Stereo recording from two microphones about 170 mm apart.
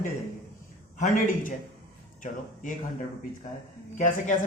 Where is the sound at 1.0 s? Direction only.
50° left (ahead or behind).